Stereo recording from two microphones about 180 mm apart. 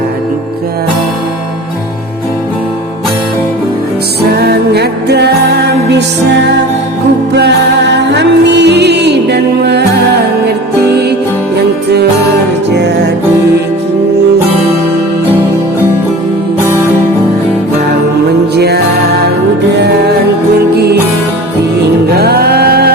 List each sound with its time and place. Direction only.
4.2 s music: 60° right (ahead or behind)
7.3 s music: 70° right (ahead or behind)
18.5 s music: 65° right (ahead or behind)
22.1 s music: 60° right (ahead or behind)